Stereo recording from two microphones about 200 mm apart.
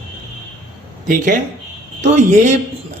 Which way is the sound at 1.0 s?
40° right (ahead or behind).